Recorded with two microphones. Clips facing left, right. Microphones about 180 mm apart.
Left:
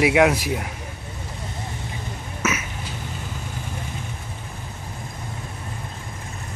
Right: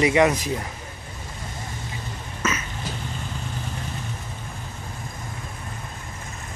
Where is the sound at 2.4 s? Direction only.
10° left (ahead or behind).